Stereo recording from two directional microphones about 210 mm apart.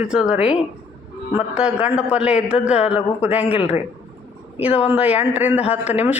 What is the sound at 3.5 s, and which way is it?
Speech, 30° left (ahead or behind).